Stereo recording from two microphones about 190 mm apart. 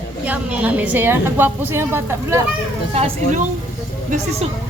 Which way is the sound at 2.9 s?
30° right (ahead or behind).